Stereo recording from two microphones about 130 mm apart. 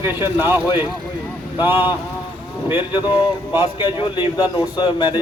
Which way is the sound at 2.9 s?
35° left (ahead or behind).